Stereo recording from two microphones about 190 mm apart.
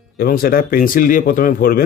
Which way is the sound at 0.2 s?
50° left (ahead or behind).